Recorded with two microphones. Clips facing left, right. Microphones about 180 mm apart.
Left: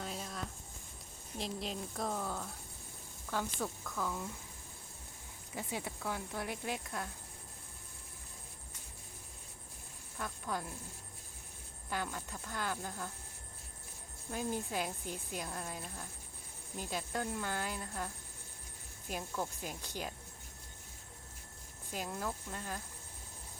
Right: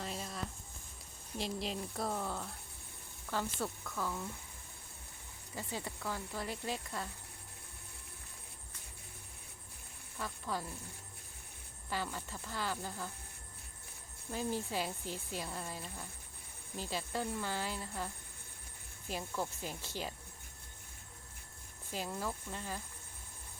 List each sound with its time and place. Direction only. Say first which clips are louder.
0.0 s a sound: even; centre (ahead or behind)
1.4 s speech: right 1 dB; centre (ahead or behind)
5.5 s speech: left 1 dB; 5° left (ahead or behind)
10.2 s speech: even; centre (ahead or behind)
11.9 s speech: even; centre (ahead or behind)
14.7 s speech: even; centre (ahead or behind)
19.8 s speech: right 1 dB; 15° left (ahead or behind)
21.9 s speech: even; centre (ahead or behind)